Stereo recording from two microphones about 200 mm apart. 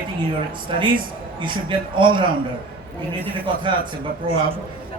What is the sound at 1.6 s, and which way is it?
Speech, 25° right (ahead or behind).